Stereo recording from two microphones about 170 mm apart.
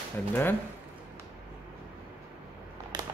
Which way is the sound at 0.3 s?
10° left (ahead or behind).